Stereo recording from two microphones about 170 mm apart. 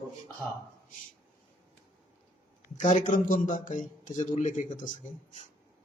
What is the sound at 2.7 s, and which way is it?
A man's voice, 45° left (ahead or behind).